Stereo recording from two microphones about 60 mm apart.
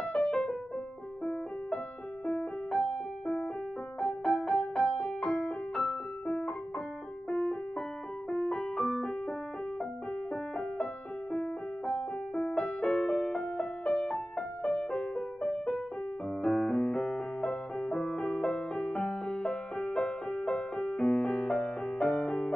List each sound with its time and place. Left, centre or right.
0.0 s music: centre
4.0 s music: centre
5.3 s keyboard: centre
7.2 s music: centre
10.3 s music: centre
16.4 s piano: centre
20.4 s music: centre